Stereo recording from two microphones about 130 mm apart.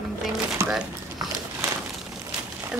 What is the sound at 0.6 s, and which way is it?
Speech, 20° right (ahead or behind).